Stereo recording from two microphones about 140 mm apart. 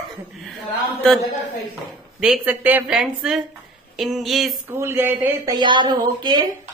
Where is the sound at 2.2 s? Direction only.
10° right (ahead or behind).